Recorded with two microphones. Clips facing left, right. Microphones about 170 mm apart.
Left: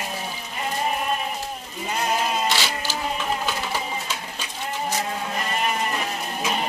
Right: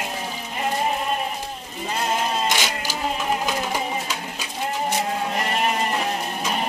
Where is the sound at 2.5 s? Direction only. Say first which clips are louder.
Right 1 dB; 15° right (ahead or behind).